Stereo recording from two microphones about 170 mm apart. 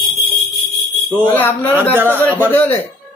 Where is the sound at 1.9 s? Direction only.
10° right (ahead or behind).